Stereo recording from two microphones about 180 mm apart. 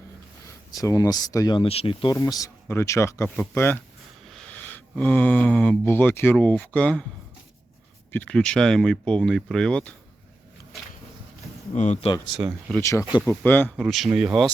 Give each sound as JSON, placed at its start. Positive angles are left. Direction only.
{"t": 0.4, "sound": "speech", "side_deg": 20}
{"t": 2.1, "sound": "speech", "side_deg": 20}
{"t": 8.1, "sound": "speech", "side_deg": 5}
{"t": 11.7, "sound": "speech", "side_deg": 40}
{"t": 12.3, "sound": "speech", "side_deg": -5}
{"t": 12.8, "sound": "speech", "side_deg": 15}
{"t": 13.8, "sound": "speech", "side_deg": 0}